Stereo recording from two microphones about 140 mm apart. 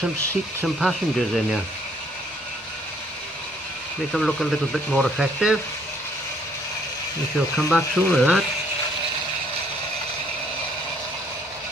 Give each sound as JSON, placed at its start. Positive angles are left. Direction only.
{"t": 0.7, "sound": "speech", "side_deg": 0}
{"t": 4.1, "sound": "speech", "side_deg": 0}
{"t": 7.5, "sound": "speech", "side_deg": 0}